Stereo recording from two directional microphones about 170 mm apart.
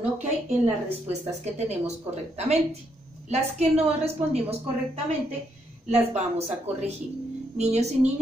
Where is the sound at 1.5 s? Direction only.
40° right (ahead or behind).